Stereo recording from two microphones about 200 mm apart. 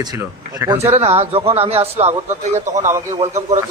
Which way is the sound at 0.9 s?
30° right (ahead or behind).